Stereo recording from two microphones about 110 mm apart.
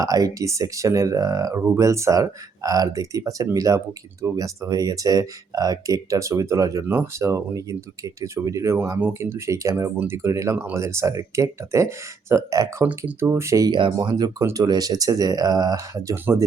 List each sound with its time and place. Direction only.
0.0 s speech: 35° right (ahead or behind)
13.7 s speech: 45° right (ahead or behind)